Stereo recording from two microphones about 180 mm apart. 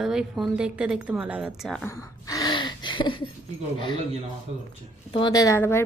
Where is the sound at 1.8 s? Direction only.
20° left (ahead or behind).